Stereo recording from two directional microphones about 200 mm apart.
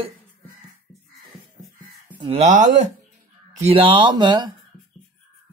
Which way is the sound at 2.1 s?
25° right (ahead or behind).